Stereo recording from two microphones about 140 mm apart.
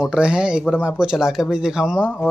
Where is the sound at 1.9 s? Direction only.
15° left (ahead or behind).